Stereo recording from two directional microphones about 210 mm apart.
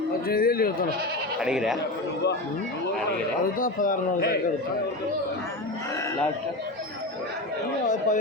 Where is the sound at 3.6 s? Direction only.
40° left (ahead or behind).